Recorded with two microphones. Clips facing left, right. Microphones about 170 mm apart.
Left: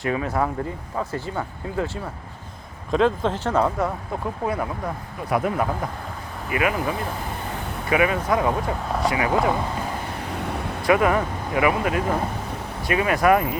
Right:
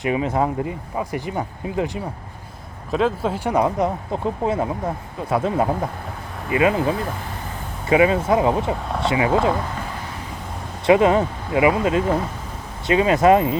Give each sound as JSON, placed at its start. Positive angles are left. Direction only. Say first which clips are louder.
{"t": 0.0, "sound": "speech", "louder": "right 3 dB", "side_deg": -20}
{"t": 2.9, "sound": "speech", "louder": "even", "side_deg": -5}
{"t": 10.3, "sound": "vehicle", "louder": "left 5 dB", "side_deg": 70}
{"t": 10.8, "sound": "speech", "louder": "right 4 dB", "side_deg": -25}